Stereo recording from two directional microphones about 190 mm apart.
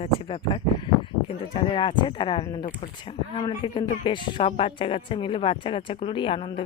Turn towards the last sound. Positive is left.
turn(degrees=25)  # may be behind; listen again after turning